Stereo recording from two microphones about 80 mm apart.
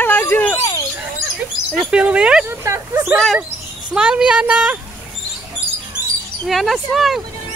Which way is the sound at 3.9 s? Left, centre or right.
Centre.